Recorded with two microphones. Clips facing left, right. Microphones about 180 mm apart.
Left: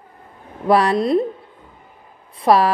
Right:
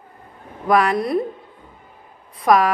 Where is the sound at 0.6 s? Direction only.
30° left (ahead or behind).